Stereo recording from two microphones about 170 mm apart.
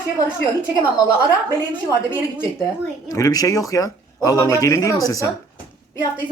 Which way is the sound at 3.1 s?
20° left (ahead or behind).